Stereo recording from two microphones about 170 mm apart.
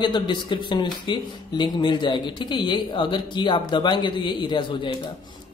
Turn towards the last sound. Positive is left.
turn(degrees=30)  # may be behind; listen again after turning